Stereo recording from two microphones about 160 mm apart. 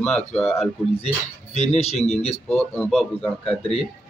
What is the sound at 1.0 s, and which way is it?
Speech, 45° left (ahead or behind).